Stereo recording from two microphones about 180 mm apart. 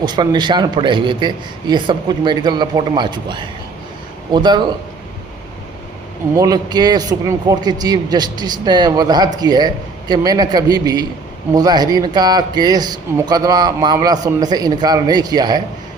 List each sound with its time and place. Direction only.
0.0 s speech: 25° right (ahead or behind)
6.3 s speech: 20° right (ahead or behind)